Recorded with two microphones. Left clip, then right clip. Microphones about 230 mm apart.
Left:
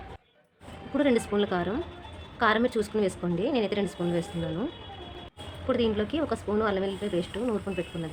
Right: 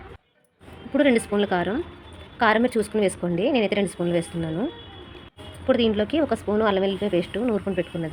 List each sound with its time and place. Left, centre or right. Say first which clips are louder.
0.9 s a woman's voice: right 5 dB; centre
5.6 s a woman's voice: right 6 dB; centre